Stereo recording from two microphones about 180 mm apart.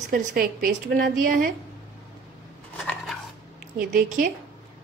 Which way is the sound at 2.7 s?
5° left (ahead or behind).